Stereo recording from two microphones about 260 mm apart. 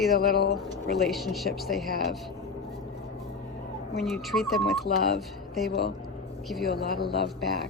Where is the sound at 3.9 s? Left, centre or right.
Centre.